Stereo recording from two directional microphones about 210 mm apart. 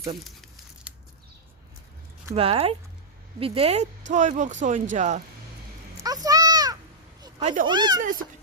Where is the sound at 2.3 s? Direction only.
25° right (ahead or behind).